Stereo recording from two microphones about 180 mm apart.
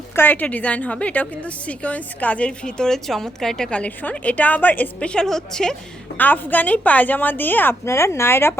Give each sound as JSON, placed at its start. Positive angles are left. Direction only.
{"t": 0.2, "sound": "a woman's voice", "side_deg": 10}